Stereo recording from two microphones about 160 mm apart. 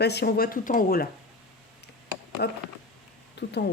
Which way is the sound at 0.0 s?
90° left.